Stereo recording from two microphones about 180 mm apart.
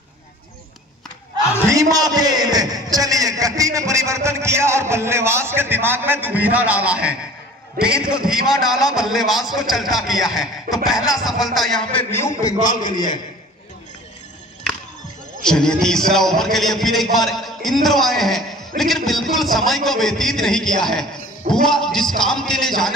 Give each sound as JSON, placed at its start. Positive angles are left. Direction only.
{"t": 1.7, "sound": "a man's voice", "side_deg": -20}
{"t": 15.4, "sound": "a man's voice", "side_deg": 5}